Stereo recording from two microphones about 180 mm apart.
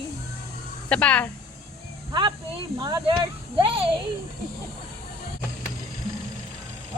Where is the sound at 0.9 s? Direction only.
5° left (ahead or behind).